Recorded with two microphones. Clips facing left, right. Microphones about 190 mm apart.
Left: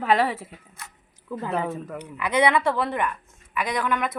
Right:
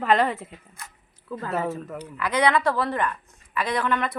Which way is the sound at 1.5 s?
5° right (ahead or behind).